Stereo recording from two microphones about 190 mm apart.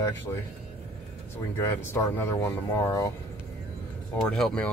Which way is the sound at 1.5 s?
15° left (ahead or behind).